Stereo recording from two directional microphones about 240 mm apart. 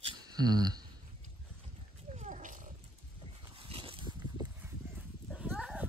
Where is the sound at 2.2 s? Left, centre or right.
Right.